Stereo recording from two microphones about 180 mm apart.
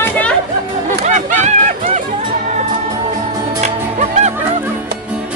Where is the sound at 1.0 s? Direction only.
40° right (ahead or behind).